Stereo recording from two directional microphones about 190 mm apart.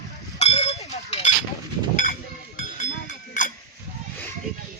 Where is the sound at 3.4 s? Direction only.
40° left (ahead or behind).